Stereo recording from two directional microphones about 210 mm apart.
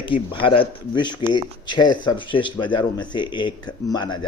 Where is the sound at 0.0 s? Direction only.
25° left (ahead or behind).